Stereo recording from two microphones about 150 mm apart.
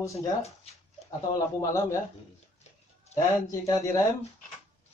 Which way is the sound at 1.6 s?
20° left (ahead or behind).